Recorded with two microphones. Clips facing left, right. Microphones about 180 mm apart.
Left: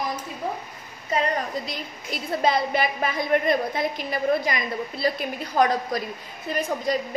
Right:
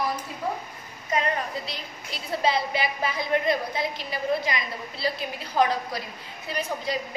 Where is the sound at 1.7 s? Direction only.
50° left (ahead or behind).